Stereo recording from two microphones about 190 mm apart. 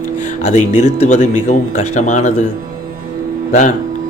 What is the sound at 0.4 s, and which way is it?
Speech, 35° left (ahead or behind).